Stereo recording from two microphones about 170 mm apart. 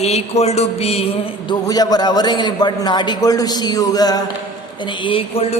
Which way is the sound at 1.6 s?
25° left (ahead or behind).